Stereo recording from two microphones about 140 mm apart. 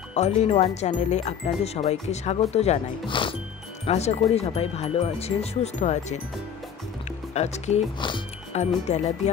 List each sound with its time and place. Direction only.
0.1 s speech: 50° left (ahead or behind)
3.1 s speech: 35° left (ahead or behind)
3.8 s speech: 50° left (ahead or behind)
7.3 s speech: 50° left (ahead or behind)